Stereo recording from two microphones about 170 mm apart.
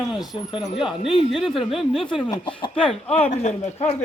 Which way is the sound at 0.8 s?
5° right (ahead or behind).